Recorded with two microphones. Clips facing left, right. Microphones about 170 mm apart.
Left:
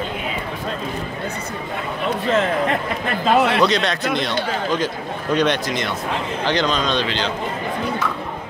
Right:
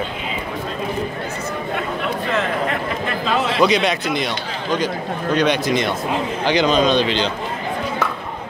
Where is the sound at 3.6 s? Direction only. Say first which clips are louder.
Right 2 dB; 10° right (ahead or behind).